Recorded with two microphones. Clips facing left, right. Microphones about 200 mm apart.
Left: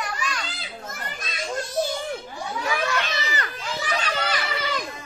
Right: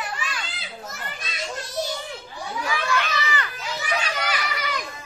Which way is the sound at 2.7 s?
45° left (ahead or behind).